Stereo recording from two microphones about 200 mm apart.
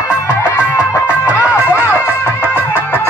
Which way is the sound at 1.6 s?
10° right (ahead or behind).